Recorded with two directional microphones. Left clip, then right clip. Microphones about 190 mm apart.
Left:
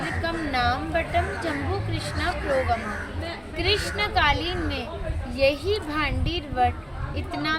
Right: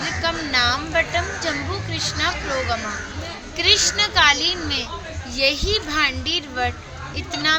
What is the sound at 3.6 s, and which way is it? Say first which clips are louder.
A woman's voice: right 7 dB; 5° right (ahead or behind).